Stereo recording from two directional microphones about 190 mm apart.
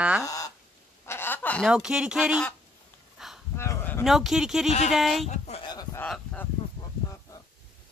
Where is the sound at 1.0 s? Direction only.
10° left (ahead or behind).